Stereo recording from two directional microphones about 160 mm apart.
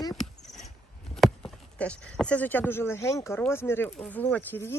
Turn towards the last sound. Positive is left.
turn(degrees=15)  # may be behind; listen again after turning